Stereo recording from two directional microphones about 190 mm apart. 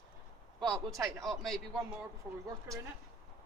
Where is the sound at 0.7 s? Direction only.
Centre (ahead or behind).